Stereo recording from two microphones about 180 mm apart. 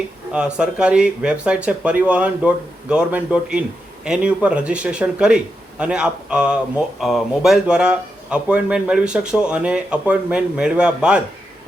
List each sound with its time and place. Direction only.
0.3 s a man's voice: 5° right (ahead or behind)